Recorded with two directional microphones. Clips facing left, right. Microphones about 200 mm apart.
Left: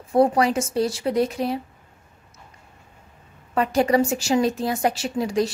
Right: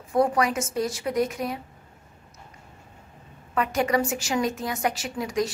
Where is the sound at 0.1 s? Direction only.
30° left (ahead or behind).